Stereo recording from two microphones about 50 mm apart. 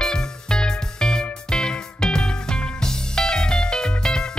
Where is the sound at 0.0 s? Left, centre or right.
Centre.